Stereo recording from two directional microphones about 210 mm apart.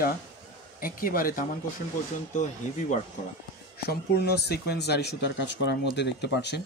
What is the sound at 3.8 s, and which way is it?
Speech, 50° left (ahead or behind).